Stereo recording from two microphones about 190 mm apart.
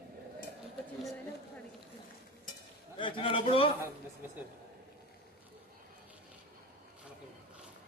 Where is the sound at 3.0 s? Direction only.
25° left (ahead or behind).